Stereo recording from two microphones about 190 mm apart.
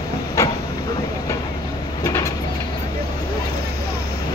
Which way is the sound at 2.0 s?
15° left (ahead or behind).